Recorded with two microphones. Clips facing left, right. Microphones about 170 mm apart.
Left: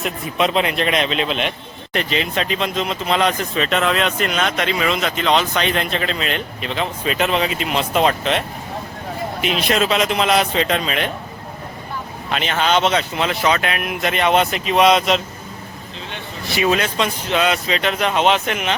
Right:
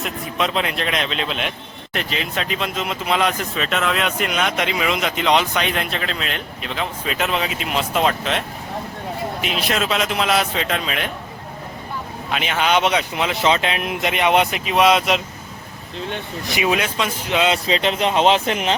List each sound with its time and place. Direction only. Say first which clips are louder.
0.0 s a man's voice: left 3 dB; centre (ahead or behind)
12.3 s speech: left 1 dB; 10° right (ahead or behind)
16.6 s speech: left 2 dB; 10° right (ahead or behind)
17.5 s speech: right 1 dB; 30° right (ahead or behind)